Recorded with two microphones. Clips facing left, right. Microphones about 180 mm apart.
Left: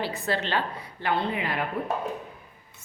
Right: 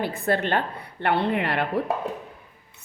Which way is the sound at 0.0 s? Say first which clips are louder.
Right 4 dB; 55° right (ahead or behind).